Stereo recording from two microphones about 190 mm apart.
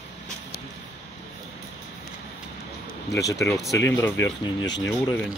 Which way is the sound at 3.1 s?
15° left (ahead or behind).